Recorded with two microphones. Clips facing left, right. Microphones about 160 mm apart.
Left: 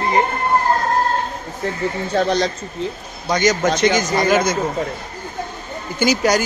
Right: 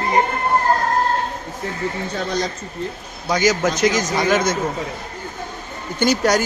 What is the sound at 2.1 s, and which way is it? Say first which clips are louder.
Speech: left 8 dB; 80° left.